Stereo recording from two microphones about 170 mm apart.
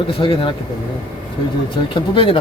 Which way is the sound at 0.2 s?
30° left (ahead or behind).